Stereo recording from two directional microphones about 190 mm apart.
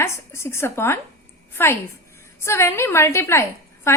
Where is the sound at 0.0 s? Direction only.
15° left (ahead or behind).